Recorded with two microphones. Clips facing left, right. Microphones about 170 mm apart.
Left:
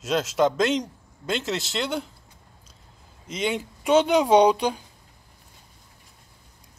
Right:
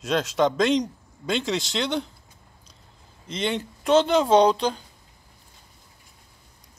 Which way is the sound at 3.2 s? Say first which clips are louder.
Even; 10° left (ahead or behind).